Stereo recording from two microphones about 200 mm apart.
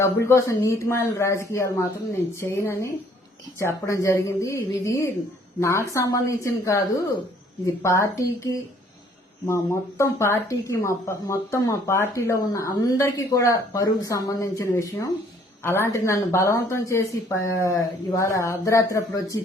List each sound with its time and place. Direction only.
0.0 s a woman's voice: 15° left (ahead or behind)
10.0 s a woman's voice: 15° left (ahead or behind)